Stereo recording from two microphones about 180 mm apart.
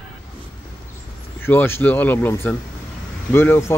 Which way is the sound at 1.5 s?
10° left (ahead or behind).